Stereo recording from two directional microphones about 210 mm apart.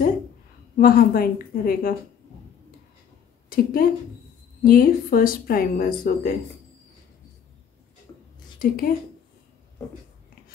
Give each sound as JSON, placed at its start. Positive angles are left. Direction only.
{"t": 0.7, "sound": "speech", "side_deg": 45}
{"t": 3.4, "sound": "a woman's voice", "side_deg": 45}
{"t": 8.5, "sound": "speech", "side_deg": 45}